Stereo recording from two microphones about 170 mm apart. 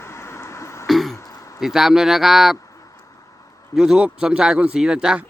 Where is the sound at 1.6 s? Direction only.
Centre (ahead or behind).